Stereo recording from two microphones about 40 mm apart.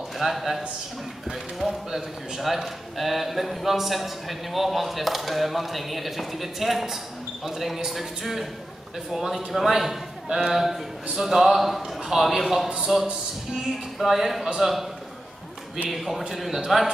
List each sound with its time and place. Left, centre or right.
0.2 s a man's voice: centre
9.7 s music: centre
10.2 s a man's voice: centre
12.6 s speech: centre
12.9 s music: centre
13.9 s a man's voice: centre
15.9 s a man's voice: centre